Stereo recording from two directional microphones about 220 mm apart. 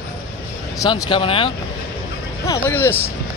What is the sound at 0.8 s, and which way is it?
Speech, 20° left (ahead or behind).